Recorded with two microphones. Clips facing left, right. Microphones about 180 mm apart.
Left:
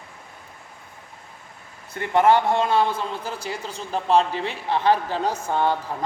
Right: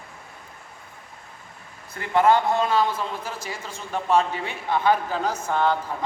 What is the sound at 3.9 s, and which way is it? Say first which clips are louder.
A woman's voice: left 2 dB; 30° left (ahead or behind).